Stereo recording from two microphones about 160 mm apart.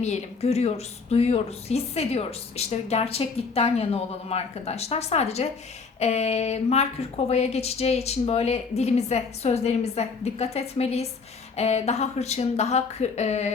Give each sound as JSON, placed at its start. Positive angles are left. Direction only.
{"t": 0.0, "sound": "speech", "side_deg": 45}